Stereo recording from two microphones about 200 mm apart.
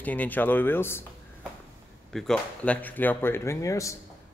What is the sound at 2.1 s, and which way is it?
Speech, 5° left (ahead or behind).